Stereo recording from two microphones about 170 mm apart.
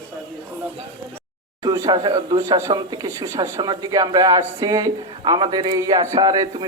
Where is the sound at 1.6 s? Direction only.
25° right (ahead or behind).